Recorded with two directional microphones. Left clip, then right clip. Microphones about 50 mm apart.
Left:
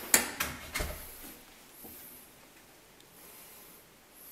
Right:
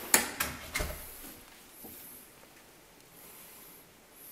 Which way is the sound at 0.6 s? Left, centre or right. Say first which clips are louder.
Right 1 dB; centre.